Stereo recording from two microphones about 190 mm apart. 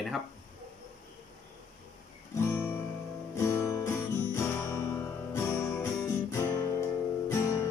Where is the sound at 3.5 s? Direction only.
15° left (ahead or behind).